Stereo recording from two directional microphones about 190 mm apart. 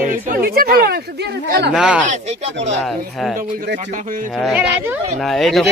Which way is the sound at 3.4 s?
45° right (ahead or behind).